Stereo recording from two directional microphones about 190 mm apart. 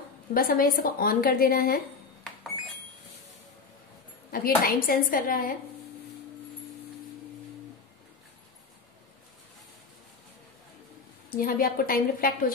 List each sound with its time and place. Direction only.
0.3 s a woman's voice: 50° left (ahead or behind)
4.3 s a woman's voice: 50° left (ahead or behind)
11.2 s a woman's voice: 50° left (ahead or behind)